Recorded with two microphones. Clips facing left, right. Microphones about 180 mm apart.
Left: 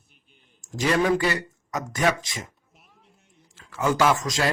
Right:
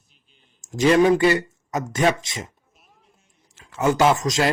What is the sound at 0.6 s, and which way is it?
Speech, 25° right (ahead or behind).